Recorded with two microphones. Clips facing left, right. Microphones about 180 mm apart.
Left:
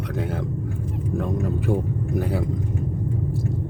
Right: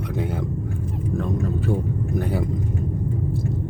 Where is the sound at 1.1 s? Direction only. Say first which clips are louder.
Even; 10° left (ahead or behind).